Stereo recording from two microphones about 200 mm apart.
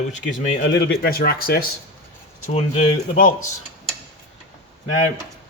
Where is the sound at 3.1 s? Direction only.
40° left (ahead or behind).